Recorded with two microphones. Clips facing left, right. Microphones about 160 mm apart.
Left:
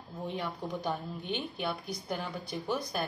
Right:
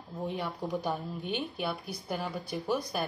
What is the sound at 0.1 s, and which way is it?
Speech, 10° right (ahead or behind).